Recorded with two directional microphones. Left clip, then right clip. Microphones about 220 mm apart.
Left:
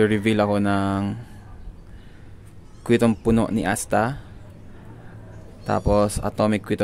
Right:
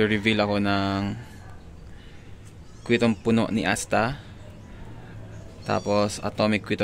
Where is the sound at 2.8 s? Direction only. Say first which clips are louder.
Left 3 dB; 25° left (ahead or behind).